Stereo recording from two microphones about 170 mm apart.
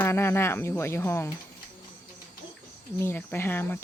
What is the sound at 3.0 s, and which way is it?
Speech, 15° left (ahead or behind).